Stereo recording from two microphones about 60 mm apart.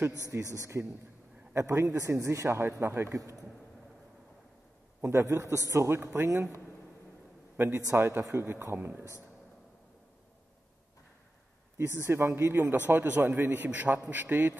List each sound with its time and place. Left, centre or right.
0.3 s a man's voice: right
3.2 s speech: right
5.0 s a man's voice: right
7.5 s a man's voice: right
11.8 s a man's voice: right